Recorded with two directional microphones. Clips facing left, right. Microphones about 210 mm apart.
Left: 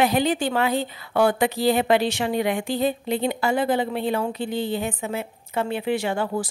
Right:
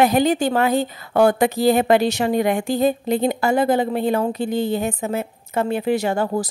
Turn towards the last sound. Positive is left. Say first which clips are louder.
# right 4 dB
turn(degrees=-40)  # may be behind; listen again after turning